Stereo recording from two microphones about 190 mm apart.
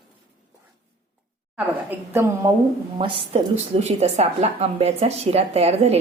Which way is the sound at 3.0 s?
25° right (ahead or behind).